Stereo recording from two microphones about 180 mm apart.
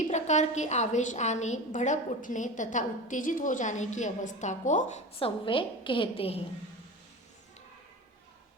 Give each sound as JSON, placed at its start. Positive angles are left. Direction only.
{"t": 0.1, "sound": "a woman's voice", "side_deg": 40}